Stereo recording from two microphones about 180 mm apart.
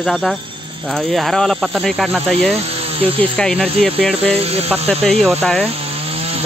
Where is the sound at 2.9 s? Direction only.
30° right (ahead or behind).